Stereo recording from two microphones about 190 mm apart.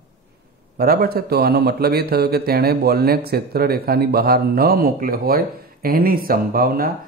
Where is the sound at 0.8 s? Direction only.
55° right (ahead or behind).